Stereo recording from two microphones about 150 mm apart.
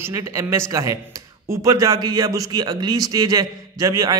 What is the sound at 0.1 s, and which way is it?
A man's voice, 20° right (ahead or behind).